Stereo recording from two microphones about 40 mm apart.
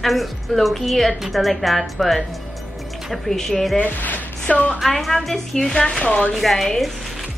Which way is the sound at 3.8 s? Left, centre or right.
Left.